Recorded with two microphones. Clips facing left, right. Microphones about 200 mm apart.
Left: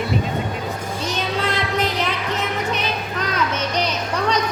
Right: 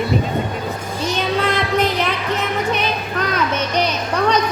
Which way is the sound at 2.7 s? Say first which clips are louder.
Right 3 dB; 60° right (ahead or behind).